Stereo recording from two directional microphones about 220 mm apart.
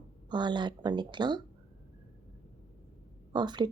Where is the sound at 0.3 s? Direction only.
20° right (ahead or behind).